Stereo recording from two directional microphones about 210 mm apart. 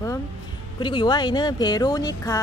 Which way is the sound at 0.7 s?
20° left (ahead or behind).